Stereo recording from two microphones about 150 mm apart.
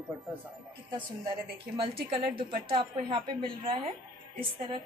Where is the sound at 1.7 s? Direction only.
35° right (ahead or behind).